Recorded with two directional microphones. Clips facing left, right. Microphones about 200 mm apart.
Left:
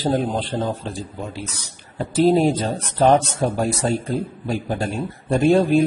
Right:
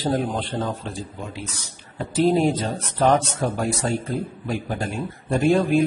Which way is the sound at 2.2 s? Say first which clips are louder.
Left 3 dB; 25° left (ahead or behind).